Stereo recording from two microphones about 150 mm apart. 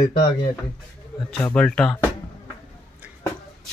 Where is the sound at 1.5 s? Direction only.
5° left (ahead or behind).